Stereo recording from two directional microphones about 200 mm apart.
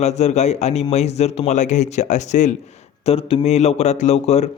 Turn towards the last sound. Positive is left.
turn(degrees=35)  # may be behind; listen again after turning